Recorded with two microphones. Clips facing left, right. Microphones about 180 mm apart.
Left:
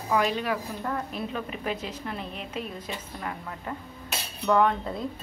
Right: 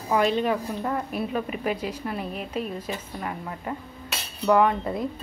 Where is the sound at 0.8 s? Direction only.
10° right (ahead or behind).